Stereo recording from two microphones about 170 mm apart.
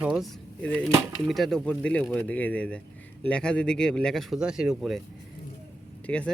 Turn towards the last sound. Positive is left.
turn(degrees=5)  # may be behind; listen again after turning